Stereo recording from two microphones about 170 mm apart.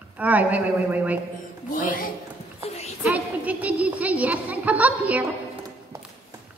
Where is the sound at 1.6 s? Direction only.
50° left (ahead or behind).